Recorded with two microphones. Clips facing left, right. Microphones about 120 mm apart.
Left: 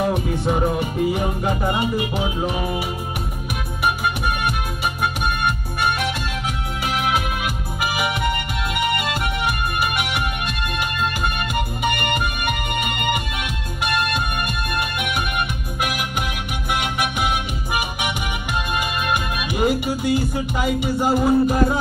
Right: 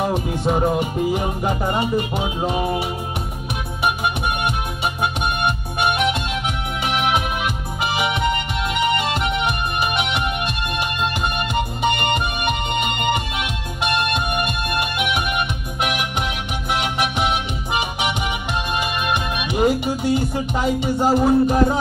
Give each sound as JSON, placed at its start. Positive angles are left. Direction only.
{"t": 0.0, "sound": "music", "side_deg": -20}
{"t": 11.8, "sound": "music", "side_deg": -25}
{"t": 18.5, "sound": "music", "side_deg": -25}